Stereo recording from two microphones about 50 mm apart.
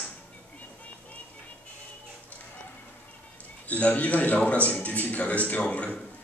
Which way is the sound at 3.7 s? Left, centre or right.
Left.